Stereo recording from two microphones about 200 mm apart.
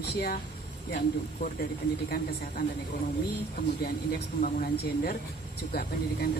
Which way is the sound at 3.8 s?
45° left (ahead or behind).